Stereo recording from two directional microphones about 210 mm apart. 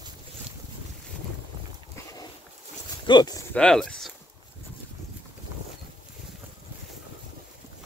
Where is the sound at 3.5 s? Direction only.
5° left (ahead or behind).